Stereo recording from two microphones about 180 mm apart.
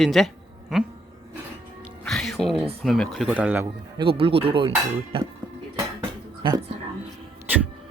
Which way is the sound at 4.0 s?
30° right (ahead or behind).